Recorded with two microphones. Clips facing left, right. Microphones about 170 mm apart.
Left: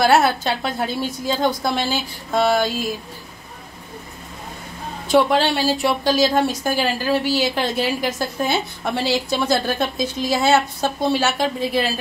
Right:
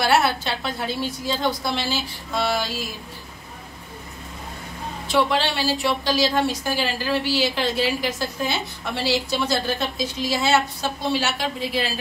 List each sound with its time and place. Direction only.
0.0 s a woman's voice: 45° left (ahead or behind)
5.1 s a woman's voice: 45° left (ahead or behind)